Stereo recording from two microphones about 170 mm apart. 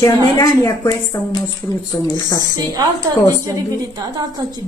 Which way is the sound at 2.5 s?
20° right (ahead or behind).